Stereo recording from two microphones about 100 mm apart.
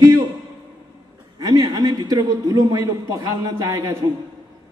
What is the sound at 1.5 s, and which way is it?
A man's voice, 45° right (ahead or behind).